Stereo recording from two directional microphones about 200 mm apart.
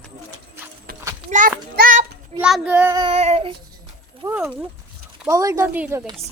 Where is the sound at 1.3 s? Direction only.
40° right (ahead or behind).